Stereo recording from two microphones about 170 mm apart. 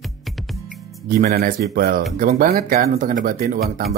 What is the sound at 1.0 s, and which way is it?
Speech, 60° right (ahead or behind).